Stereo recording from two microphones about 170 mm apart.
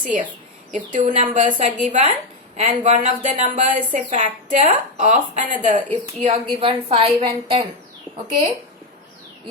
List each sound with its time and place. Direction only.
0.0 s a woman's voice: 50° right (ahead or behind)
6.2 s a woman's voice: 35° right (ahead or behind)